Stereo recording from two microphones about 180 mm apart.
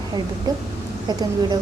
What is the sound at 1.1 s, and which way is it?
Speech, 20° right (ahead or behind).